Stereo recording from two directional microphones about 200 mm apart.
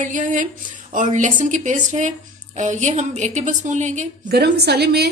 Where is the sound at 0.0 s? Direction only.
40° right (ahead or behind).